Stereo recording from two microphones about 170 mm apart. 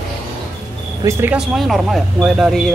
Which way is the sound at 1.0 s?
15° right (ahead or behind).